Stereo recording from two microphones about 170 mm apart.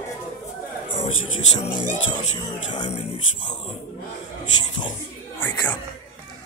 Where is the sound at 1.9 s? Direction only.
25° left (ahead or behind).